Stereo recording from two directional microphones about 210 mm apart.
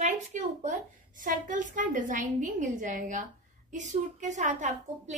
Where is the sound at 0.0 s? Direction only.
35° right (ahead or behind).